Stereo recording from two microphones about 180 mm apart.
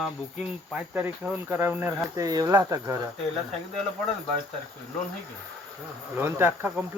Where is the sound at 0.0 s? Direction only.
5° right (ahead or behind).